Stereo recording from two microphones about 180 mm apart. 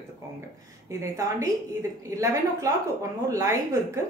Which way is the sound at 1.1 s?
15° right (ahead or behind).